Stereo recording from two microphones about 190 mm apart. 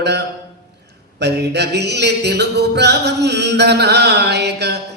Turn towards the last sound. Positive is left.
turn(degrees=-60)  # may be behind; listen again after turning